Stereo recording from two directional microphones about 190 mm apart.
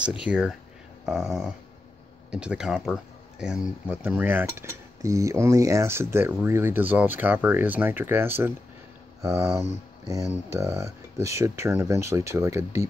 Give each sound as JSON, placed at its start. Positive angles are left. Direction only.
{"t": 0.0, "sound": "speech", "side_deg": -5}